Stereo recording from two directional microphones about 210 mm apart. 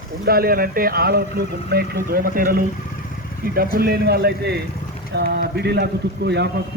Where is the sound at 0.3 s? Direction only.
45° right (ahead or behind).